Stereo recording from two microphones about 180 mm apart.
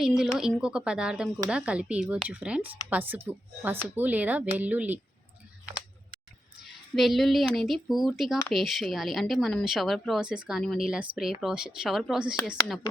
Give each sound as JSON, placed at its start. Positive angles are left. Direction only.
{"t": 0.0, "sound": "speech", "side_deg": -5}
{"t": 6.6, "sound": "speech", "side_deg": 0}